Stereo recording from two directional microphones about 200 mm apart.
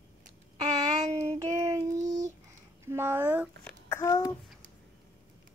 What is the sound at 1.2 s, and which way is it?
Child singing, 15° right (ahead or behind).